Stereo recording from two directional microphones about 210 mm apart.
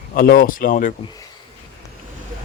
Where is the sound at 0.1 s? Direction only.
45° left (ahead or behind).